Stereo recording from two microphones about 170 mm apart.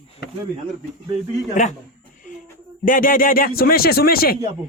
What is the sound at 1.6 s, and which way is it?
Speech, 45° left (ahead or behind).